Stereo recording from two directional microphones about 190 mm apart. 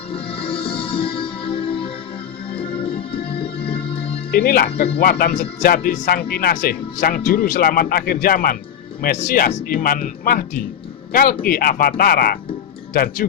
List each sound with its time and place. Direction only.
0.1 s music: 30° left (ahead or behind)
4.3 s speech: 50° left (ahead or behind)